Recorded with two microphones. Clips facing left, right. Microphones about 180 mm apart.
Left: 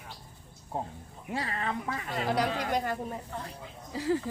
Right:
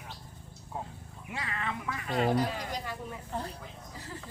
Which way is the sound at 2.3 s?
75° left (ahead or behind).